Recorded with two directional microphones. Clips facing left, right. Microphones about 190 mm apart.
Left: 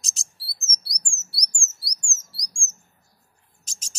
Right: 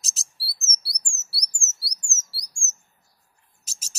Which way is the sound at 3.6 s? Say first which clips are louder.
Left 1 dB; 5° right (ahead or behind).